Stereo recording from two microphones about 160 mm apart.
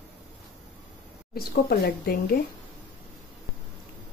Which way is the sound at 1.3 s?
70° left (ahead or behind).